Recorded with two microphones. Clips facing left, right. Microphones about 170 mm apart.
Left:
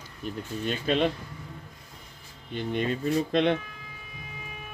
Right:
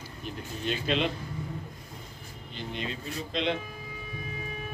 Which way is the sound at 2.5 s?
55° left (ahead or behind).